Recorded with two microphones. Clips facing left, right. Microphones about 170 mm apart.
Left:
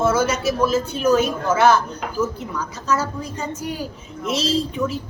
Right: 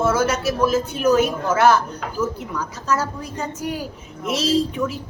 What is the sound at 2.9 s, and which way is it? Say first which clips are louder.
A woman's voice: left 1 dB; 10° right (ahead or behind).